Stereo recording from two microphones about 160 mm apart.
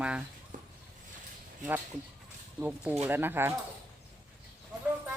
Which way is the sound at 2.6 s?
10° right (ahead or behind).